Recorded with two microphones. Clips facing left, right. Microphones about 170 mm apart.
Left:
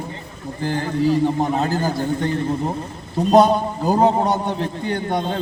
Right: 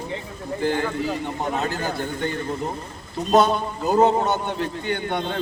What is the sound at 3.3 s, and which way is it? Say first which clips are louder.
A man's voice: left 4 dB; 35° left (ahead or behind).